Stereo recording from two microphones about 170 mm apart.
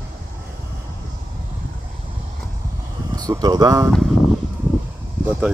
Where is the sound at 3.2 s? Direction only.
25° right (ahead or behind).